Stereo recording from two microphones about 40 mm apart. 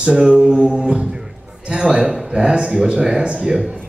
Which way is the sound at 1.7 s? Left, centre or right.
Centre.